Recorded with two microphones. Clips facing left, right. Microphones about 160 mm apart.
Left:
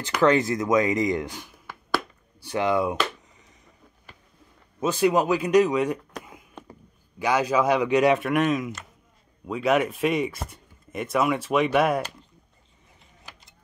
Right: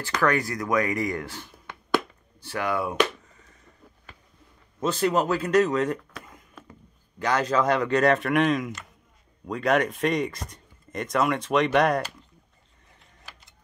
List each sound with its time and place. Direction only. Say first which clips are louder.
0.0 s speech: left 4 dB; 20° left (ahead or behind)
4.7 s speech: left 2 dB; 10° left (ahead or behind)
7.2 s speech: left 1 dB; 10° left (ahead or behind)